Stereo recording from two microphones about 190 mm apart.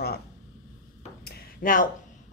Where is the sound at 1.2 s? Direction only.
50° left (ahead or behind).